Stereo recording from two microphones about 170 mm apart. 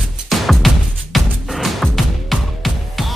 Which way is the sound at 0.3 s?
Centre (ahead or behind).